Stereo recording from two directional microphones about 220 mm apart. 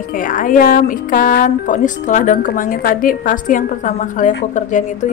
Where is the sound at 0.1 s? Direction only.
40° left (ahead or behind).